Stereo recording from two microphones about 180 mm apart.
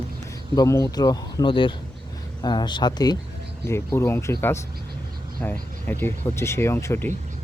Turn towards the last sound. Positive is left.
turn(degrees=15)  # may be behind; listen again after turning